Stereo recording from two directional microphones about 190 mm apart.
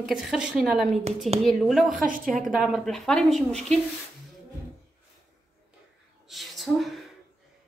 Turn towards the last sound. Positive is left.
turn(degrees=0)  # may be behind; listen again after turning